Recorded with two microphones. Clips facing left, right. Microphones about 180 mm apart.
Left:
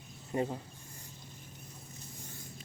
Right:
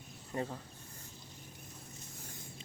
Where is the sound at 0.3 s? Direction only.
20° left (ahead or behind).